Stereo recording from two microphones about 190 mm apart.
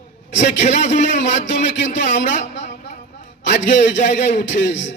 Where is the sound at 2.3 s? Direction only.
35° left (ahead or behind).